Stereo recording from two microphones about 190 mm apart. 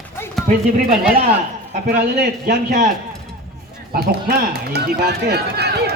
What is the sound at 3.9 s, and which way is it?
Speech, 55° right (ahead or behind).